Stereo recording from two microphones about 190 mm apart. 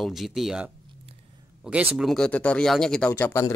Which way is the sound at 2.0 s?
Centre (ahead or behind).